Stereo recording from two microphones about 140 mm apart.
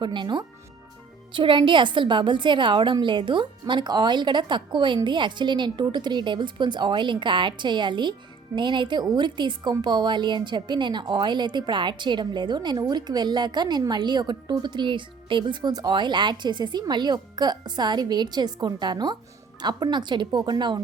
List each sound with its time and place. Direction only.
0.0 s speech: 35° right (ahead or behind)